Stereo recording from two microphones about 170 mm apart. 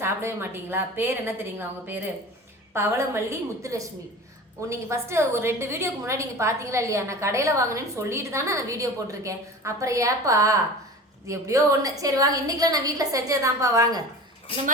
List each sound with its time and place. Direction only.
0.0 s a woman's voice: 15° right (ahead or behind)